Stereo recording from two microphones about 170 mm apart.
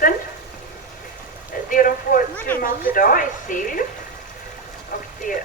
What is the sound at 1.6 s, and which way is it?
Speech, 55° left (ahead or behind).